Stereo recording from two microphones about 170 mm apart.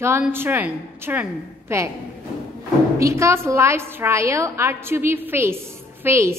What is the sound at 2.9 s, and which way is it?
A woman's voice, 15° right (ahead or behind).